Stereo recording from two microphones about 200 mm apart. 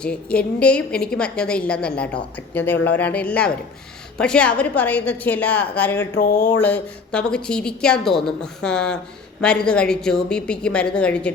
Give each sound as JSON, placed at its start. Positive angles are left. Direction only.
{"t": 0.0, "sound": "a woman's voice", "side_deg": 5}
{"t": 6.1, "sound": "a sound", "side_deg": 45}
{"t": 6.6, "sound": "a woman's voice", "side_deg": 10}